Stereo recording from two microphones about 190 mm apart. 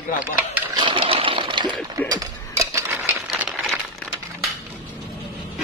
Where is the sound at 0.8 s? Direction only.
25° right (ahead or behind).